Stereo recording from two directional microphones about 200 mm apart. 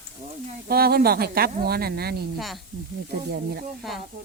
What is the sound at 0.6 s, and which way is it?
Speech, 50° right (ahead or behind).